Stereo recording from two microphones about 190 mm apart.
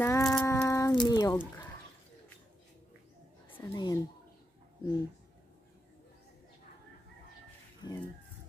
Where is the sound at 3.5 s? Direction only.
20° left (ahead or behind).